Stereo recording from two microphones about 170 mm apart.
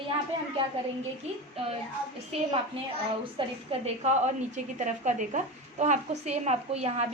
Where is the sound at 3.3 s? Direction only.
40° right (ahead or behind).